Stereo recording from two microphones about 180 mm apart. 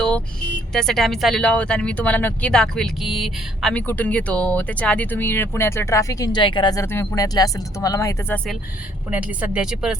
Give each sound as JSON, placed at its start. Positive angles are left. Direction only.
{"t": 0.7, "sound": "speech", "side_deg": 5}
{"t": 9.0, "sound": "a woman's voice", "side_deg": -10}